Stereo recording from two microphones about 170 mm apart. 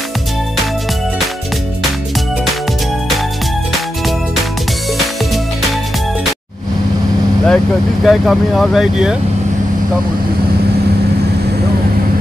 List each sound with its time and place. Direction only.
7.4 s speech: centre (ahead or behind)